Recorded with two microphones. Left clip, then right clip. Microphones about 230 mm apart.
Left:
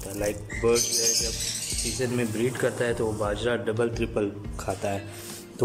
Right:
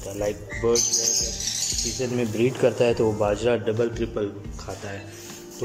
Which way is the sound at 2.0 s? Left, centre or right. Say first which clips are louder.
Right 2 dB; centre.